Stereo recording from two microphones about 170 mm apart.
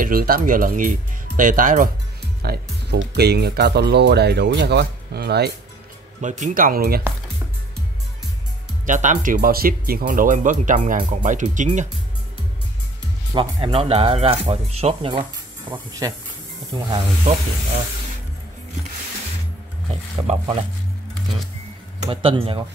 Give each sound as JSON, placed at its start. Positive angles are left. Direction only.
{"t": 0.0, "sound": "speech", "side_deg": -60}
{"t": 2.4, "sound": "speech", "side_deg": -75}
{"t": 6.2, "sound": "speech", "side_deg": -45}
{"t": 8.8, "sound": "speech", "side_deg": -45}
{"t": 13.3, "sound": "speech", "side_deg": -30}
{"t": 15.7, "sound": "speech", "side_deg": -20}
{"t": 19.9, "sound": "speech", "side_deg": -35}
{"t": 22.0, "sound": "speech", "side_deg": -30}